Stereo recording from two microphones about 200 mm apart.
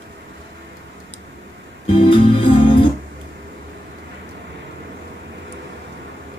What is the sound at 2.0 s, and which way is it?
Music, 25° left (ahead or behind).